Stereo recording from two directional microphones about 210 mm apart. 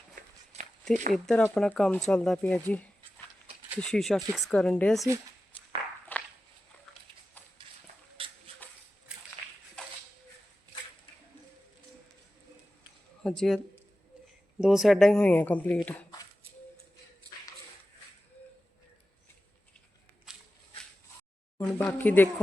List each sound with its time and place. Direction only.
0.2 s walk: 40° right (ahead or behind)
1.1 s speech: 5° left (ahead or behind)
6.1 s walk: 10° left (ahead or behind)
8.2 s a sound: 25° right (ahead or behind)
9.8 s a sound: 5° left (ahead or behind)
13.2 s speech: centre (ahead or behind)
14.6 s speech: centre (ahead or behind)
20.3 s walk: centre (ahead or behind)
21.6 s speech: 5° left (ahead or behind)